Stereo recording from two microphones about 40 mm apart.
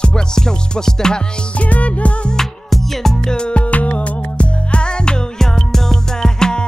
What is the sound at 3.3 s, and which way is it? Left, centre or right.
Music, left.